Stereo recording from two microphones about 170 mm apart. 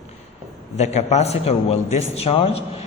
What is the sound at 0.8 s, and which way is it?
A man's voice, 40° left (ahead or behind).